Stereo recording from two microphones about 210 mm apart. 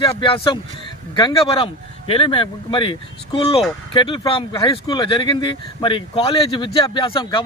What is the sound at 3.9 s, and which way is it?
Speech, 25° left (ahead or behind).